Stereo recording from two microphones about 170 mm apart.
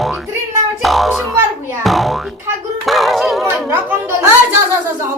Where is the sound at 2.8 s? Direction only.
Centre (ahead or behind).